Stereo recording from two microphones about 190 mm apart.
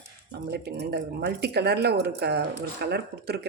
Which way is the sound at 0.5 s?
60° right (ahead or behind).